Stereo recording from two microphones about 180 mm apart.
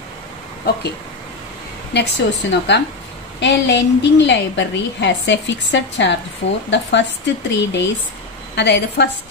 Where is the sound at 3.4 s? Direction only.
75° left (ahead or behind).